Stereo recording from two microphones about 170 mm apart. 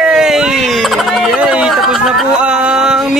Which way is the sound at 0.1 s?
5° right (ahead or behind).